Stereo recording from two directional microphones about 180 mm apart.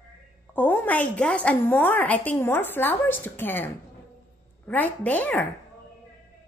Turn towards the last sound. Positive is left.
turn(degrees=10)  # may be behind; listen again after turning